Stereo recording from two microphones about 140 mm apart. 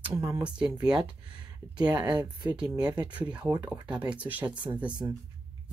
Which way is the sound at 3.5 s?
25° right (ahead or behind).